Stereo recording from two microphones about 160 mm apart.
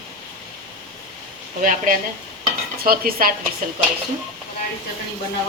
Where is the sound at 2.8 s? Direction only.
65° right (ahead or behind).